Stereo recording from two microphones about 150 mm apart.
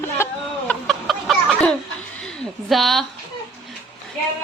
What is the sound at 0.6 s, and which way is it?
Chicken, centre (ahead or behind).